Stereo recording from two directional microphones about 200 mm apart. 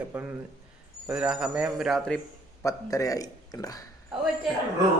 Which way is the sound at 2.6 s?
15° left (ahead or behind).